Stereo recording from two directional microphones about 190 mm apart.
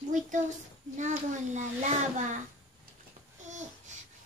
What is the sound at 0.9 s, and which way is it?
Speech, 40° right (ahead or behind).